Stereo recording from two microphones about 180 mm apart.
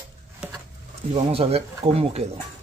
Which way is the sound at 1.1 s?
35° right (ahead or behind).